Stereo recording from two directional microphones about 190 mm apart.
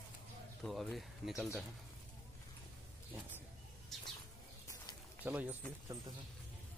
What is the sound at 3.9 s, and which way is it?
Bird, centre (ahead or behind).